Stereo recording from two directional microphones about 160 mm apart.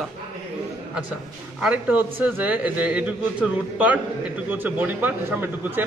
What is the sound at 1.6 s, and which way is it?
Speech, 10° right (ahead or behind).